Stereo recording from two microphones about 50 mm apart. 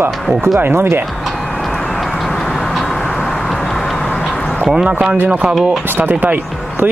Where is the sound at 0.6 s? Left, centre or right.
Right.